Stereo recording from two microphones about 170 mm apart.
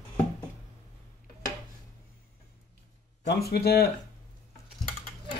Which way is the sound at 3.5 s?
65° left (ahead or behind).